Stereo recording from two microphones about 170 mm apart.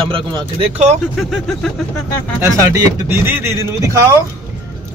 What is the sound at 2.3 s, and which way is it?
Speech, 15° right (ahead or behind).